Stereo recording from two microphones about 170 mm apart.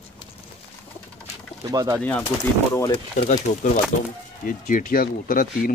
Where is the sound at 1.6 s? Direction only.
20° right (ahead or behind).